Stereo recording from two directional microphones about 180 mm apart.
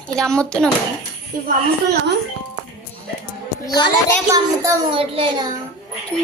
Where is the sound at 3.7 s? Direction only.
25° left (ahead or behind).